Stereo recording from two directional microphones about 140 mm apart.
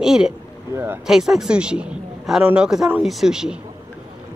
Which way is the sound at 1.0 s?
5° right (ahead or behind).